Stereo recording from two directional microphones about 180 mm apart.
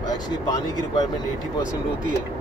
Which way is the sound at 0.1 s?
20° left (ahead or behind).